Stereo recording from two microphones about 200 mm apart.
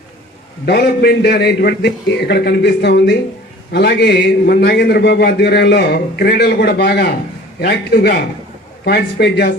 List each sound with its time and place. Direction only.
0.6 s a man's voice: 55° left (ahead or behind)